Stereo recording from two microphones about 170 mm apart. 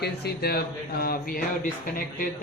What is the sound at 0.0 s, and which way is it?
Speech, 70° left (ahead or behind).